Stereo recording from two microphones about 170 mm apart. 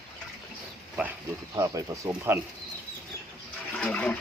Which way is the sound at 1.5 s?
20° right (ahead or behind).